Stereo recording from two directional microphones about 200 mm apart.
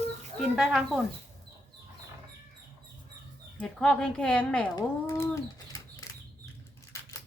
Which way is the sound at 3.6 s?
5° left (ahead or behind).